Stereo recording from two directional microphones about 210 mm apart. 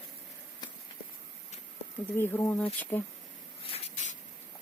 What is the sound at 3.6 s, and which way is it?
Spray, 30° left (ahead or behind).